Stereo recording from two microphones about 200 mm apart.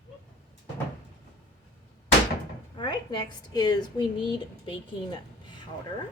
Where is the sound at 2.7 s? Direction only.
20° left (ahead or behind).